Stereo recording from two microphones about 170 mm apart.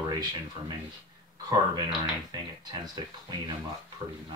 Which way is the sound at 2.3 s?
25° right (ahead or behind).